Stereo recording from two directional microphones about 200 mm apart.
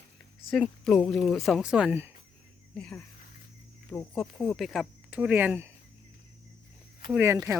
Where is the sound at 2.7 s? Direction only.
5° left (ahead or behind).